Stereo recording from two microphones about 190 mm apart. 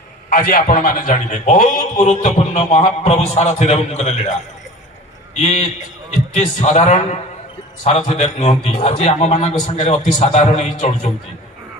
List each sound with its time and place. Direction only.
0.3 s a man's voice: 50° left (ahead or behind)